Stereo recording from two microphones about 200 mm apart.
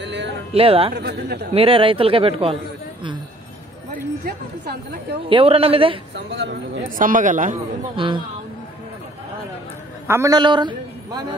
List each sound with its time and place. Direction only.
0.0 s music: 60° right (ahead or behind)
0.5 s speech: 30° right (ahead or behind)
0.9 s speech: 55° right (ahead or behind)
1.5 s speech: 30° right (ahead or behind)
3.9 s a woman's voice: 50° right (ahead or behind)
5.3 s speech: 30° right (ahead or behind)
6.1 s speech: 60° right (ahead or behind)
7.0 s a man's voice: 40° right (ahead or behind)
7.9 s speech: 25° right (ahead or behind)
10.0 s a woman's voice: 15° right (ahead or behind)